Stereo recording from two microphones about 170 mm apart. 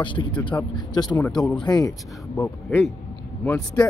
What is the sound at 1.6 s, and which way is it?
Speech, 25° left (ahead or behind).